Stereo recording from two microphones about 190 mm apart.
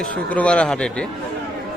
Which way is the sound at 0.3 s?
5° left (ahead or behind).